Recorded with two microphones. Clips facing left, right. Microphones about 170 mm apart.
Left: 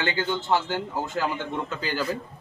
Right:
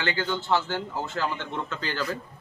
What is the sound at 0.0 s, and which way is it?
A man's voice, 20° left (ahead or behind).